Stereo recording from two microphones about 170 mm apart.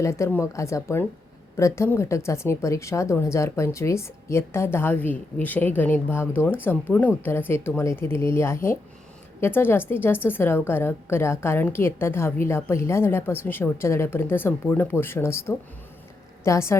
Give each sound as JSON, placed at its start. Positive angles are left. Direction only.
{"t": 0.0, "sound": "a woman's voice", "side_deg": 15}